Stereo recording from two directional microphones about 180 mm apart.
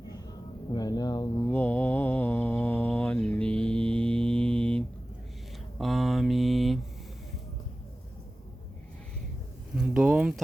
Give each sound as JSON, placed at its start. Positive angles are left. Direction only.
{"t": 0.7, "sound": "speech", "side_deg": 20}
{"t": 1.5, "sound": "mantra", "side_deg": 10}
{"t": 5.8, "sound": "mantra", "side_deg": 0}
{"t": 9.7, "sound": "a sound", "side_deg": -5}